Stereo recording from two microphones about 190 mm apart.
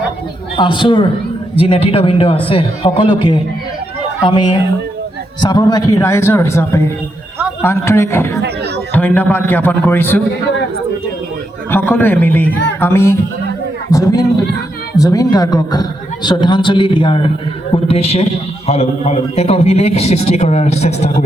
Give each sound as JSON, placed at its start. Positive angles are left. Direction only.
{"t": 0.5, "sound": "a man's voice", "side_deg": 25}
{"t": 8.4, "sound": "chatter", "side_deg": -60}
{"t": 8.9, "sound": "a man's voice", "side_deg": 10}
{"t": 11.7, "sound": "a man's voice", "side_deg": 10}